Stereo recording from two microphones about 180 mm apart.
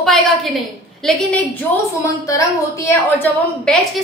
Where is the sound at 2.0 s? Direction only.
15° left (ahead or behind).